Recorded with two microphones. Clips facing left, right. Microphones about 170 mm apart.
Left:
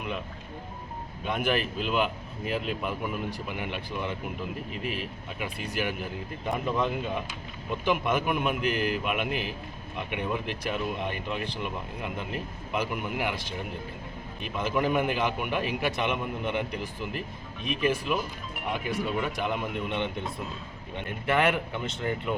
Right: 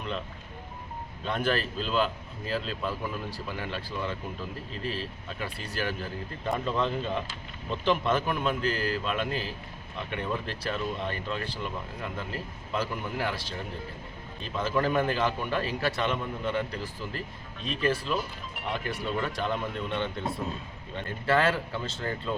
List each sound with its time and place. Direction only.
1.2 s speech: 15° left (ahead or behind)